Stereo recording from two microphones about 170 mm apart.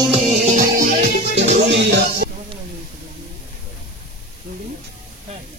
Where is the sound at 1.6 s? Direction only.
90° right; by 2.3 s 75° right (ahead or behind).